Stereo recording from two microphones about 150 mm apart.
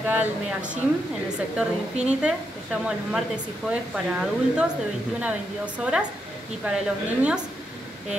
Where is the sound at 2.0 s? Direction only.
5° right (ahead or behind).